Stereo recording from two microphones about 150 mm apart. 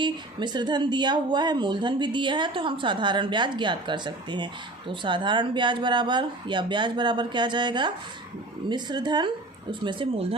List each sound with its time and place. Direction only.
0.0 s a woman's voice: 30° right (ahead or behind)